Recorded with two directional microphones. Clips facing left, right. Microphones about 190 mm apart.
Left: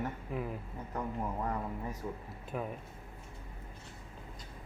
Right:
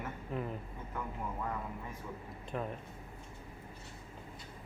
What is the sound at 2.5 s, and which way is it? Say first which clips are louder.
Speech: even; 5° left (ahead or behind).